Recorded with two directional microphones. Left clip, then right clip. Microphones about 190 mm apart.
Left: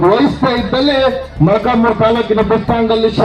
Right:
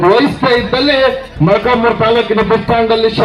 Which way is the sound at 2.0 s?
65° left (ahead or behind).